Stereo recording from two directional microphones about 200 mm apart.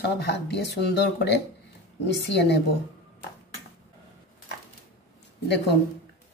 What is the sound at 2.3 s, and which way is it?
Speech, 60° left (ahead or behind).